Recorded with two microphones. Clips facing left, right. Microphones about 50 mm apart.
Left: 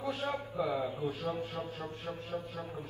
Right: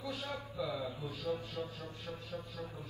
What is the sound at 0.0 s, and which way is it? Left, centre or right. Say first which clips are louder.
A man's voice: left 6 dB; left.